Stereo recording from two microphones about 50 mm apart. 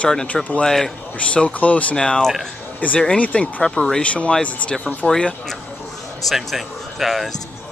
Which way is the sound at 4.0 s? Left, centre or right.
Left.